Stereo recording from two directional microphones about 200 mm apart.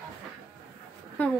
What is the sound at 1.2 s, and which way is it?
Speech, 10° left (ahead or behind).